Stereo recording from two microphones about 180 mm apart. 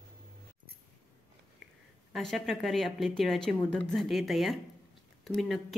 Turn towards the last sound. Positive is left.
turn(degrees=0)  # may be behind; listen again after turning